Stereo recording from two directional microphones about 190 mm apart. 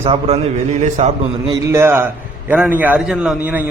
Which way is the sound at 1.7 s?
15° right (ahead or behind).